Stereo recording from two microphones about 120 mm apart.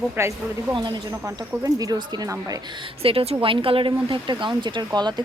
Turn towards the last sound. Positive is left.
turn(degrees=-35)  # may be behind; listen again after turning